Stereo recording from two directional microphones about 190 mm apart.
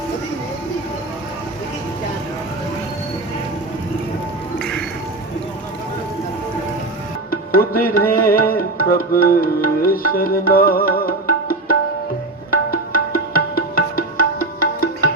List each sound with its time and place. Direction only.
7.3 s music: 50° left (ahead or behind)